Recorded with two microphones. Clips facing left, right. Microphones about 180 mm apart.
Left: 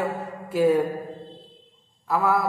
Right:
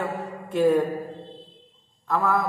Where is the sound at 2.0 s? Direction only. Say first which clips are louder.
Left 1 dB; 10° left (ahead or behind).